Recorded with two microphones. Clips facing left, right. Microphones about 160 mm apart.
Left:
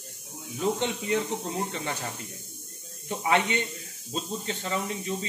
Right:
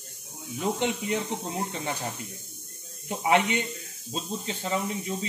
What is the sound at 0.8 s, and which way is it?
Speech, 15° right (ahead or behind).